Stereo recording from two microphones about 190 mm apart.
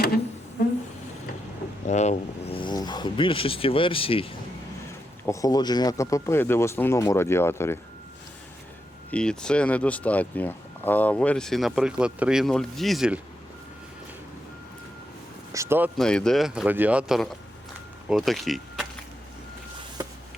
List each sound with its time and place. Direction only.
0.6 s a sound: 45° left (ahead or behind)
1.9 s speech: 35° left (ahead or behind)
5.2 s speech: 15° left (ahead or behind)
9.0 s speech: 5° left (ahead or behind)
15.5 s speech: 15° right (ahead or behind)
16.0 s speech: 5° left (ahead or behind)